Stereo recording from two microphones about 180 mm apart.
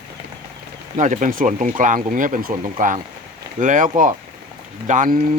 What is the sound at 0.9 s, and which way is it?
Speech, 40° right (ahead or behind).